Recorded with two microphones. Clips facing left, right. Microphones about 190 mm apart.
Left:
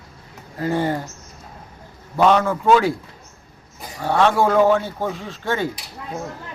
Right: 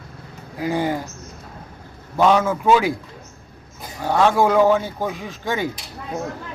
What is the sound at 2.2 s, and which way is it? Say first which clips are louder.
Speech: even; 5° right (ahead or behind).